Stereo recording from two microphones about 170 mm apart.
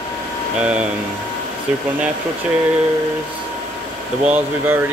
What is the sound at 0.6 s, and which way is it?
Speech, 5° right (ahead or behind).